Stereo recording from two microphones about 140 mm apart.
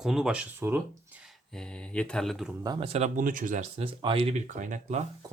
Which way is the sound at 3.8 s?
40° right (ahead or behind).